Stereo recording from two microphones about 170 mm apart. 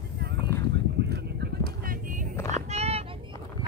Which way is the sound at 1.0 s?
75° right (ahead or behind).